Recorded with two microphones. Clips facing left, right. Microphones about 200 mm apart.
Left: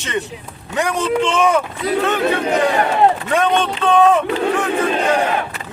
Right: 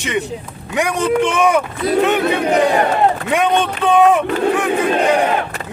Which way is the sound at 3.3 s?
15° right (ahead or behind).